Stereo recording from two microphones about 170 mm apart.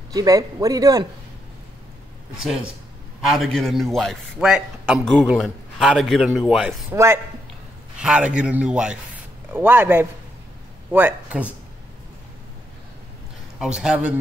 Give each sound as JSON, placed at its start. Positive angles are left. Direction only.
{"t": 0.1, "sound": "a man's voice", "side_deg": -20}
{"t": 2.3, "sound": "a man's voice", "side_deg": -5}
{"t": 6.9, "sound": "a man's voice", "side_deg": -15}
{"t": 13.6, "sound": "a man's voice", "side_deg": -5}